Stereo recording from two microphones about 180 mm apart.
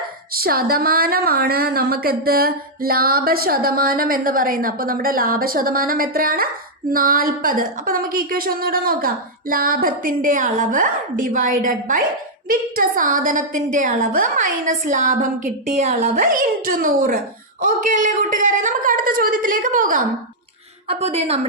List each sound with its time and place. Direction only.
0.3 s a woman's voice: 55° right (ahead or behind); by 16.2 s 40° right (ahead or behind)
16.2 s a woman's voice: 50° right (ahead or behind)
20.8 s a woman's voice: 35° right (ahead or behind)